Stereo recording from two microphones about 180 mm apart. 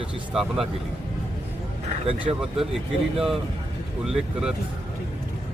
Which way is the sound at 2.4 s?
Centre (ahead or behind).